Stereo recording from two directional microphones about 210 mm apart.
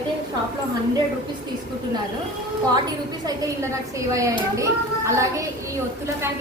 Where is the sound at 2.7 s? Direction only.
20° right (ahead or behind).